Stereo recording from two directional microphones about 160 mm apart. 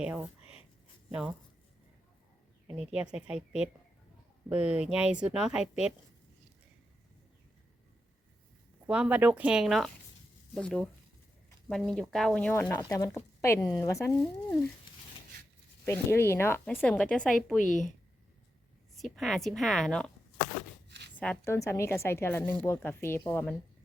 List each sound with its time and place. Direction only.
0.0 s a woman's voice: 10° right (ahead or behind)
2.6 s a woman's voice: 5° right (ahead or behind)
8.9 s a woman's voice: 10° right (ahead or behind); by 14.2 s 20° left (ahead or behind)
15.9 s speech: 15° left (ahead or behind)
17.6 s a woman's voice: 55° left (ahead or behind)
18.9 s a woman's voice: centre (ahead or behind)
21.2 s speech: 15° left (ahead or behind)